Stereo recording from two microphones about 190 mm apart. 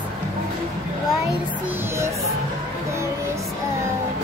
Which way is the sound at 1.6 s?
15° right (ahead or behind).